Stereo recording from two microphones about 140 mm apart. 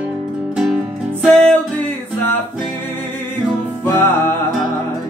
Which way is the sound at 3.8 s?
15° left (ahead or behind).